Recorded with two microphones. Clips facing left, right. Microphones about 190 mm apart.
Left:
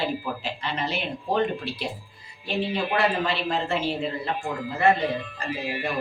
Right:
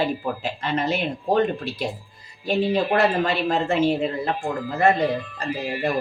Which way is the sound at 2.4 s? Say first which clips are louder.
Right 6 dB; 45° right (ahead or behind).